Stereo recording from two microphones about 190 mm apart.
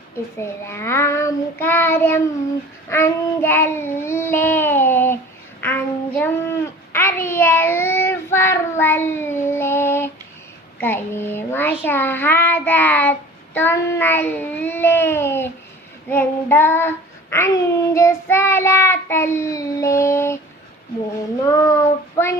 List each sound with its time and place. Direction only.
0.3 s a child's voice: 15° left (ahead or behind)
5.5 s child singing: 10° left (ahead or behind)
10.8 s a child's voice: 10° left (ahead or behind)
21.4 s a child's voice: 15° left (ahead or behind)